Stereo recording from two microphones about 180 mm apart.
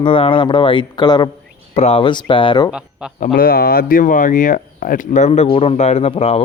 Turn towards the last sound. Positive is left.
turn(degrees=35)  # may be behind; listen again after turning